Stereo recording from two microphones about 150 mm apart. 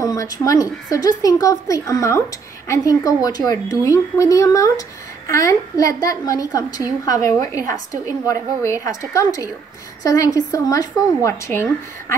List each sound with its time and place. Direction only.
0.0 s a woman's voice: 20° left (ahead or behind)